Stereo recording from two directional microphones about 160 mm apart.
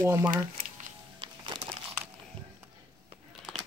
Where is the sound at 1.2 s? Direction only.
30° right (ahead or behind).